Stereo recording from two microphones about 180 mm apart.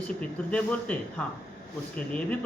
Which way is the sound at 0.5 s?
10° left (ahead or behind).